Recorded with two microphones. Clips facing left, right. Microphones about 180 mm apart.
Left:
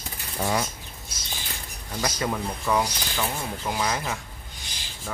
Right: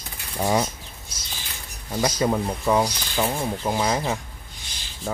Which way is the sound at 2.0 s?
25° right (ahead or behind).